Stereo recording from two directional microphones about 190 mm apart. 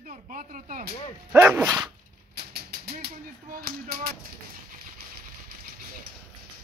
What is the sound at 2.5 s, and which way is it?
Speech, 55° right (ahead or behind).